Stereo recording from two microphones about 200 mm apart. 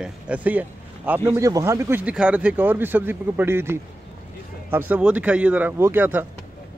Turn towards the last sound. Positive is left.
turn(degrees=-10)  # may be behind; listen again after turning